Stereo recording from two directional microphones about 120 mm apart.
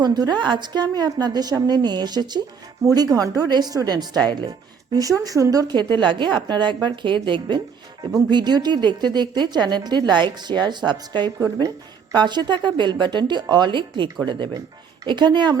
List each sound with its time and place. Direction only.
0.0 s a woman's voice: 35° right (ahead or behind)
11.3 s speech: 25° right (ahead or behind)
12.1 s a woman's voice: 40° right (ahead or behind)